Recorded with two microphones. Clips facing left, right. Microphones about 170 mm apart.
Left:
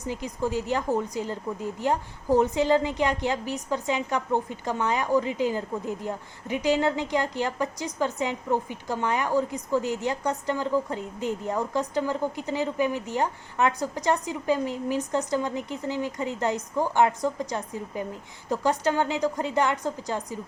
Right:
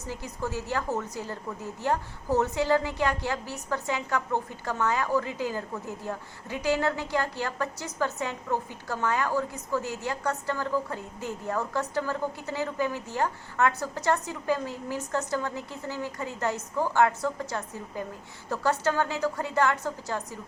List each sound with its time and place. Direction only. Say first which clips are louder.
0.0 s a woman's voice: left 5 dB; 15° left (ahead or behind)